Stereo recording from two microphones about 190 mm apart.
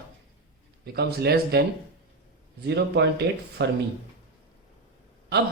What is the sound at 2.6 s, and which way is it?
A man's voice, 65° right (ahead or behind).